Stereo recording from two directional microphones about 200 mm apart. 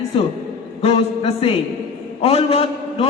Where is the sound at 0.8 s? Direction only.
30° left (ahead or behind).